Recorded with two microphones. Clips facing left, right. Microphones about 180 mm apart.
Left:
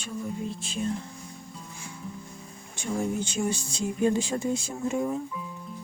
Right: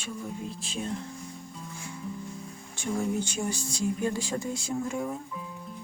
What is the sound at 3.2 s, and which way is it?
Speech, 25° left (ahead or behind).